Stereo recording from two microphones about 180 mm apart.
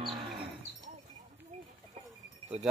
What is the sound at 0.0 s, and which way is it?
Cattle, 30° right (ahead or behind).